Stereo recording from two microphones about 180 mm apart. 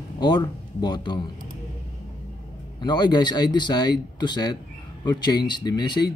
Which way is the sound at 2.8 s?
25° left (ahead or behind).